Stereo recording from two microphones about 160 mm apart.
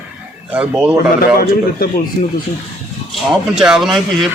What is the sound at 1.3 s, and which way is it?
Speech, 70° left (ahead or behind).